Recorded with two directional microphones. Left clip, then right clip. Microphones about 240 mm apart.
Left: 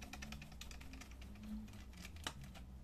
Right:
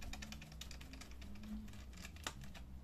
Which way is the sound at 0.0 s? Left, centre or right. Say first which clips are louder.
Even; centre.